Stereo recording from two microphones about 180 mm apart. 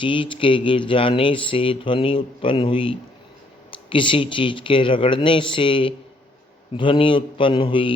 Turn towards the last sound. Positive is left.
turn(degrees=30)  # may be behind; listen again after turning